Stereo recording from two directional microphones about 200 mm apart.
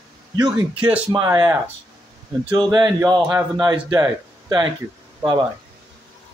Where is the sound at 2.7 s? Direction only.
15° right (ahead or behind).